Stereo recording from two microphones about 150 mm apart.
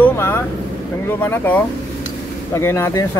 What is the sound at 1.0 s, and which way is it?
Speech, 15° left (ahead or behind).